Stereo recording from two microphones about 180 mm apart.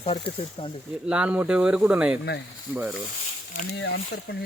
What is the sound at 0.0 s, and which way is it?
Speech, 30° left (ahead or behind).